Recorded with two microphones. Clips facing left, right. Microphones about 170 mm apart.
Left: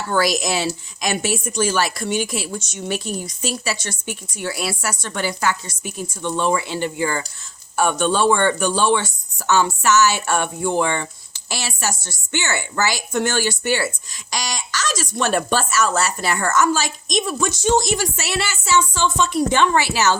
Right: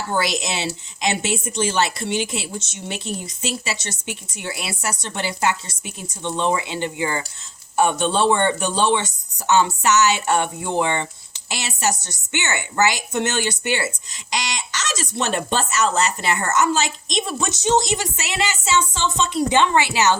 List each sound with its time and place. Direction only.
0.1 s a woman's voice: 25° right (ahead or behind)